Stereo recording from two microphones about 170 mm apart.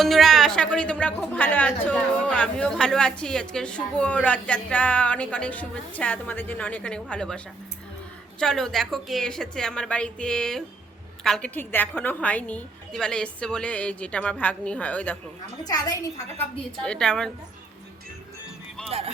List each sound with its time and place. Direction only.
0.0 s a woman's voice: centre (ahead or behind)
15.6 s a woman's voice: 20° left (ahead or behind)
16.4 s a woman's voice: 5° left (ahead or behind)
18.9 s speech: 35° right (ahead or behind)